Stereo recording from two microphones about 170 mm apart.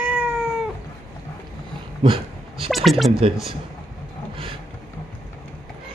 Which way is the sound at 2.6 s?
Centre (ahead or behind).